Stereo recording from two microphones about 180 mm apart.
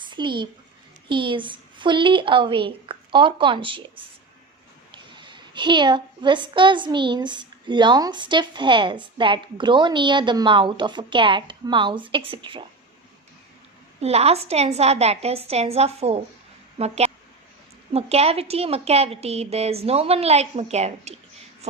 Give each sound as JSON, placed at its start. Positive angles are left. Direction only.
{"t": 0.0, "sound": "a sound", "side_deg": -25}
{"t": 1.0, "sound": "a child's voice", "side_deg": -25}
{"t": 14.0, "sound": "a woman's voice", "side_deg": -35}